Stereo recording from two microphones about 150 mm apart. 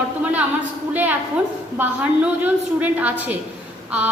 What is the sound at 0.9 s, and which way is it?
A woman's voice, 10° right (ahead or behind).